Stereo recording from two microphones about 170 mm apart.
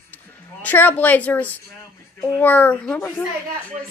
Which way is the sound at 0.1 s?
10° left (ahead or behind).